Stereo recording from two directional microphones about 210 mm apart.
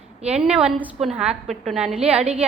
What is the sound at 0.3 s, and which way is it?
A woman's voice, 5° right (ahead or behind).